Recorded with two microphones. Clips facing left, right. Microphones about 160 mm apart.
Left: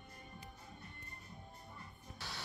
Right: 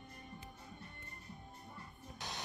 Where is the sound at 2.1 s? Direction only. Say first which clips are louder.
Right 3 dB; 20° right (ahead or behind).